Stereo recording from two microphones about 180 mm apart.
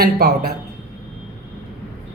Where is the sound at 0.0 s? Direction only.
60° right (ahead or behind).